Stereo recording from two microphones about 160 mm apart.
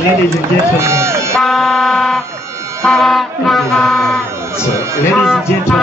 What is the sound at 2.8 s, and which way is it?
Music, centre (ahead or behind).